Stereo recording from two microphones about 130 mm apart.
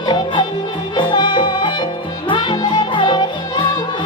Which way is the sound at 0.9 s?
35° left (ahead or behind).